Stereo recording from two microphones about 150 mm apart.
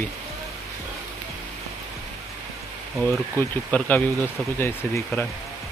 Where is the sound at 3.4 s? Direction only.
10° left (ahead or behind).